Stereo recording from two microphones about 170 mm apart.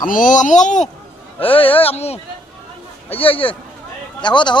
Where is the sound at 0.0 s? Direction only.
50° left (ahead or behind).